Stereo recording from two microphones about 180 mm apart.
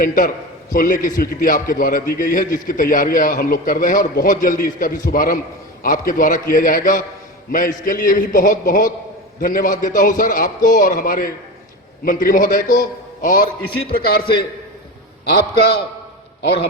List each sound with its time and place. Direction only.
0.0 s a man's voice: 50° left (ahead or behind)
15.3 s a man's voice: 65° left (ahead or behind)